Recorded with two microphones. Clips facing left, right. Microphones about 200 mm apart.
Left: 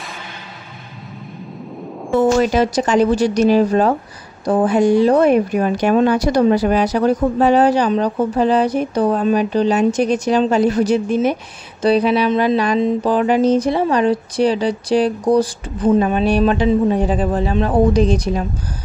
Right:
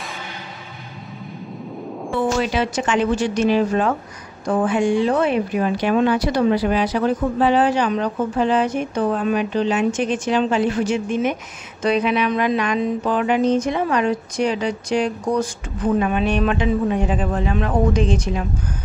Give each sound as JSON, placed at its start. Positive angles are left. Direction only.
{"t": 2.1, "sound": "a woman's voice", "side_deg": 45}